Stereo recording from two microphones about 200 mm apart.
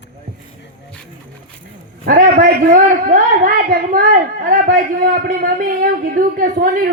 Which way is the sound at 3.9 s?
45° right (ahead or behind).